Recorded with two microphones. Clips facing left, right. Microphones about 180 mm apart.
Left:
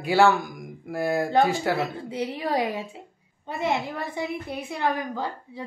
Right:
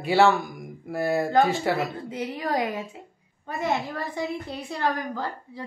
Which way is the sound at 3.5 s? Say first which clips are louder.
Even; 20° left (ahead or behind).